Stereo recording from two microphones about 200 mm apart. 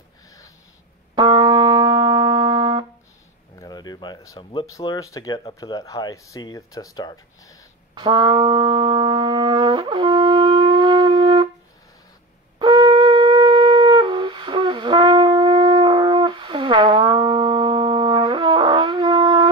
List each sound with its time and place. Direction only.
1.1 s music: 25° right (ahead or behind)
3.5 s speech: 20° left (ahead or behind)
7.9 s shofar: 25° right (ahead or behind)
12.5 s shofar: 20° right (ahead or behind)